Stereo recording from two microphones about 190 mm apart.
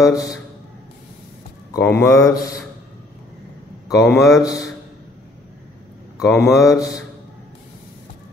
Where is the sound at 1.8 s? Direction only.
15° left (ahead or behind).